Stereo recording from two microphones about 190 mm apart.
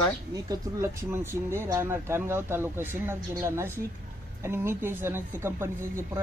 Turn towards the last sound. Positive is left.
turn(degrees=-15)  # may be behind; listen again after turning